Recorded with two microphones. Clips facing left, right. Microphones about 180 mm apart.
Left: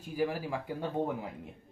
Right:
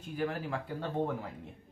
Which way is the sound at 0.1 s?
10° left (ahead or behind).